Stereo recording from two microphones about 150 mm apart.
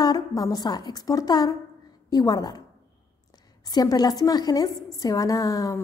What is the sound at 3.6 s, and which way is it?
A woman's voice, 25° left (ahead or behind).